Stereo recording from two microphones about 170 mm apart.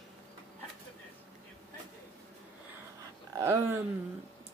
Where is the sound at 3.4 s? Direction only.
15° right (ahead or behind).